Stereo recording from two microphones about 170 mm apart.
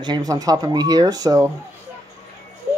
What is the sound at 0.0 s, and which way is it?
Speech, 25° right (ahead or behind).